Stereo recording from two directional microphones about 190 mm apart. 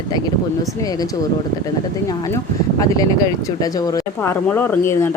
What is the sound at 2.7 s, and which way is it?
Speech, 20° left (ahead or behind).